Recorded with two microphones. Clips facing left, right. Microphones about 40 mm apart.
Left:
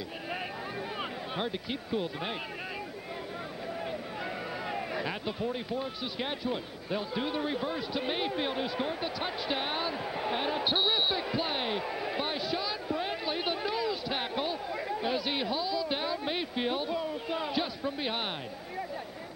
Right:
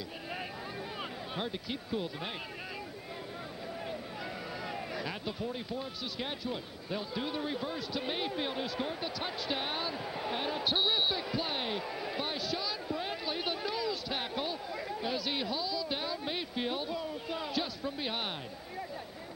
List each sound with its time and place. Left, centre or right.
1.3 s speech: centre
4.6 s basketball bounce: centre